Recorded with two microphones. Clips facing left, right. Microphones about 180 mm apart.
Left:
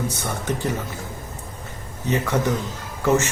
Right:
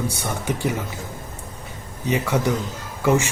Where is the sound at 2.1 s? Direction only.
10° right (ahead or behind).